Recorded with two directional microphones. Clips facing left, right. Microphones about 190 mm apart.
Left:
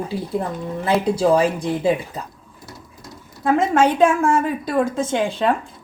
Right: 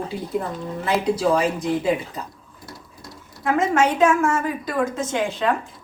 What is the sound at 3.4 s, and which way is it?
A woman's voice, 30° left (ahead or behind).